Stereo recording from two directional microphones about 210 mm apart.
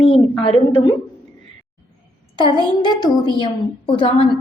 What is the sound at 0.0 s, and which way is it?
Speech, 25° left (ahead or behind).